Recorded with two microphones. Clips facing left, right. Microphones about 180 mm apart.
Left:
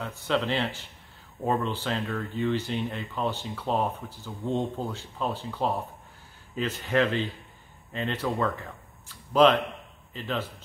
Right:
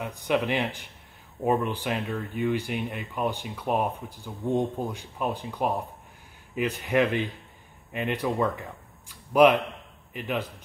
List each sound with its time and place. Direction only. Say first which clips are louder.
0.0 s a man's voice: right 2 dB; 15° right (ahead or behind)